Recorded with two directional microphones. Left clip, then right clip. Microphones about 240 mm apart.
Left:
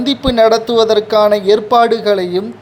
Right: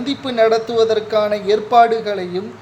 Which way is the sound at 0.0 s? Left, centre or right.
Left.